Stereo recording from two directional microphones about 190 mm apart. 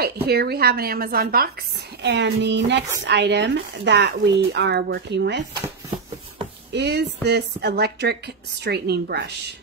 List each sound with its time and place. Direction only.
0.0 s a woman's voice: 55° right (ahead or behind)
2.0 s speech: 65° right (ahead or behind)
6.7 s speech: 60° right (ahead or behind)